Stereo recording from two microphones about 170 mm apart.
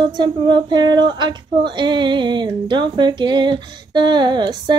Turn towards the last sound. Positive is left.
turn(degrees=-25)  # may be behind; listen again after turning